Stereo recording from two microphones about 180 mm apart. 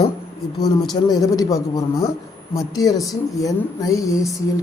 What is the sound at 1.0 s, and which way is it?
Speech, 20° left (ahead or behind).